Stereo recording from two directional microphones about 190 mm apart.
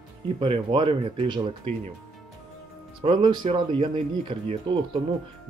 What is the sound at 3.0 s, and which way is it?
Speech, 25° right (ahead or behind).